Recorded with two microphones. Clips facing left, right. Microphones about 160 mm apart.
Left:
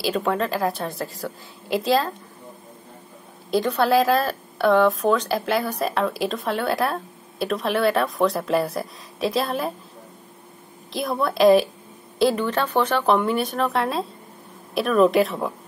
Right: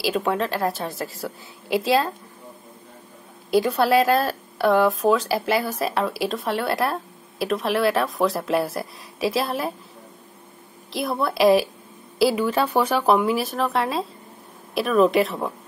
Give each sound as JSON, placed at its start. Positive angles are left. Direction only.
{"t": 0.0, "sound": "speech", "side_deg": 0}
{"t": 3.4, "sound": "speech", "side_deg": -5}
{"t": 10.9, "sound": "speech", "side_deg": 0}